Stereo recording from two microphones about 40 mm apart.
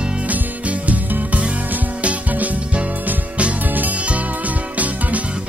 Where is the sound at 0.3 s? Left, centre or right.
Right.